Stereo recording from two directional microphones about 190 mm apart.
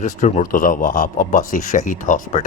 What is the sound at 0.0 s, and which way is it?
A man's voice, 40° left (ahead or behind).